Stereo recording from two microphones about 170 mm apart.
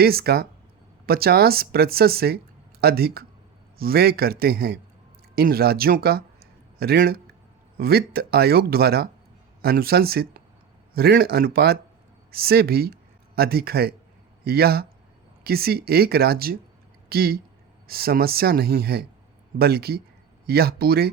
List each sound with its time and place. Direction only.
0.0 s speech: 65° right (ahead or behind)